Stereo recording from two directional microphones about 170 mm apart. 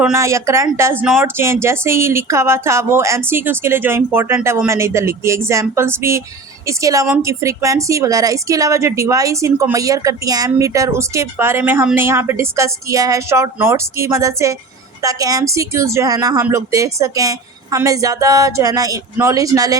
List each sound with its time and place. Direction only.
0.0 s speech: 15° right (ahead or behind)
1.0 s speech: 5° right (ahead or behind)
1.4 s a woman's voice: 15° right (ahead or behind)